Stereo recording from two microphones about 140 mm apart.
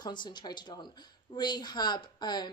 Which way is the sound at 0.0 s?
35° left (ahead or behind).